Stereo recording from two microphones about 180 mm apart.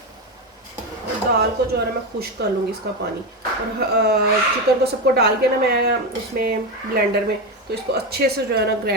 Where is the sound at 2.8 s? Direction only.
65° right (ahead or behind).